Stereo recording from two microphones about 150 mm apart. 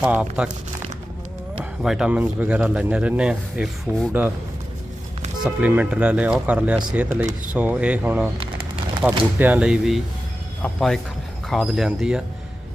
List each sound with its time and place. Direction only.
0.0 s a man's voice: 10° right (ahead or behind)
1.8 s a man's voice: 5° right (ahead or behind)
3.9 s a man's voice: 15° right (ahead or behind)
5.4 s a man's voice: 10° right (ahead or behind)
8.4 s a sound: 40° right (ahead or behind)
9.0 s a man's voice: 10° right (ahead or behind)